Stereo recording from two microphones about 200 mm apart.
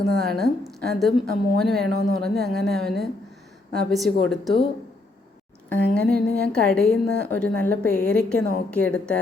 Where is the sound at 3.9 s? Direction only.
Centre (ahead or behind).